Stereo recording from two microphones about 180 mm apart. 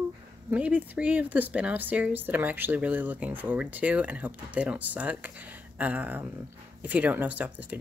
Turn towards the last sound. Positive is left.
turn(degrees=-10)  # may be behind; listen again after turning